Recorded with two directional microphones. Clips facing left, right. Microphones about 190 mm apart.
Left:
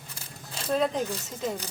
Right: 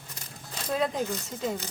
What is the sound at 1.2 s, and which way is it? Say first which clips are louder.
Speech: even; centre (ahead or behind).